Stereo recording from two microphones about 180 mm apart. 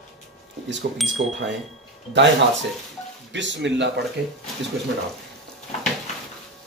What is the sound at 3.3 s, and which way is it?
Speech, 85° right.